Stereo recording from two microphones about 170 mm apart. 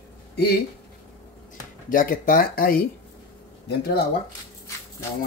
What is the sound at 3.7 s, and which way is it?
Speech, 70° left (ahead or behind).